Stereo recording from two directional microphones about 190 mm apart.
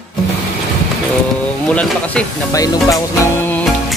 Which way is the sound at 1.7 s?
5° left (ahead or behind).